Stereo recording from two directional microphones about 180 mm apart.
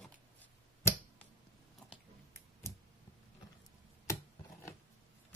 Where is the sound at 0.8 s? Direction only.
15° left (ahead or behind).